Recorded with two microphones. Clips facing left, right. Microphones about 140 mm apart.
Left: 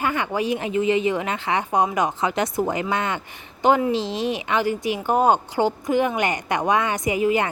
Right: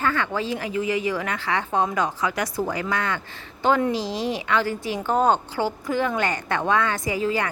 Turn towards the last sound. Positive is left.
turn(degrees=20)  # may be behind; listen again after turning